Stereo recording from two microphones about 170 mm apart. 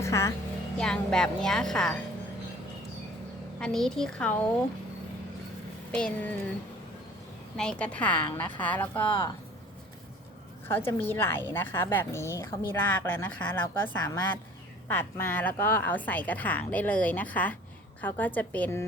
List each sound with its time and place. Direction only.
0.0 s speech: 15° left (ahead or behind)
0.8 s a woman's voice: 5° left (ahead or behind)
3.6 s a woman's voice: 5° left (ahead or behind)
5.9 s a woman's voice: 5° left (ahead or behind)
7.5 s a woman's voice: 5° left (ahead or behind)
10.7 s a woman's voice: 15° left (ahead or behind)